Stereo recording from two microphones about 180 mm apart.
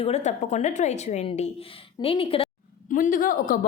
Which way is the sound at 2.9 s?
50° left (ahead or behind).